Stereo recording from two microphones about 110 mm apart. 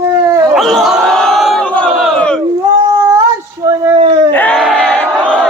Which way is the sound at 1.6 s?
10° left (ahead or behind).